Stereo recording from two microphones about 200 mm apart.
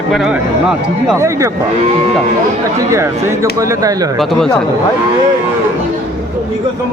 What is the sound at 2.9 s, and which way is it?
Speech, 15° right (ahead or behind).